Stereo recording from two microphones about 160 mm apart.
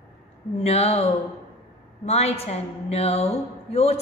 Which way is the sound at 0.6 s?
40° left (ahead or behind).